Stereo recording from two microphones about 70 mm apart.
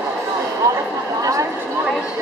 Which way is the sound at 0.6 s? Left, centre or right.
Right.